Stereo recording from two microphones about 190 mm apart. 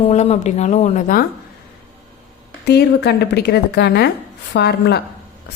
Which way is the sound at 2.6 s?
60° left (ahead or behind).